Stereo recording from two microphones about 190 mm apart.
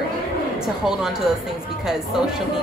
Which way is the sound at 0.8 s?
Centre (ahead or behind).